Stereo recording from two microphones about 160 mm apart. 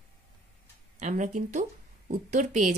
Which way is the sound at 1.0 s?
50° right (ahead or behind).